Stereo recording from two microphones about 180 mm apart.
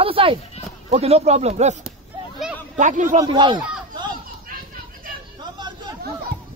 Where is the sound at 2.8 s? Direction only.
45° right (ahead or behind).